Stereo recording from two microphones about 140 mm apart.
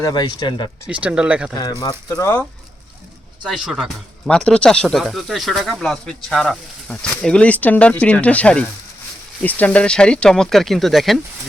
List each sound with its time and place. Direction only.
0.0 s speech: 30° left (ahead or behind)
0.9 s speech: 10° right (ahead or behind)
1.8 s speech: 25° left (ahead or behind)
3.4 s speech: 5° right (ahead or behind)